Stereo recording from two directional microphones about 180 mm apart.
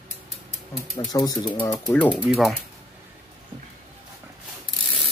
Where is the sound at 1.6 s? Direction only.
10° left (ahead or behind).